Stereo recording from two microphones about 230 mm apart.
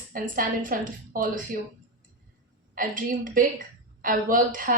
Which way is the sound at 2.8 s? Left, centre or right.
Right.